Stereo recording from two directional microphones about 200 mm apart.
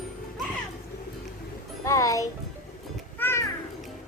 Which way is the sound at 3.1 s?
10° left (ahead or behind).